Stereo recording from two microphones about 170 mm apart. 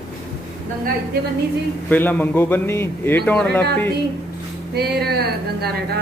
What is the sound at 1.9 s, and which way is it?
Speech, 10° left (ahead or behind).